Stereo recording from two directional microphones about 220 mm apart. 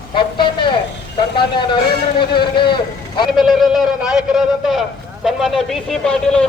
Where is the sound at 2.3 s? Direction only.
20° left (ahead or behind).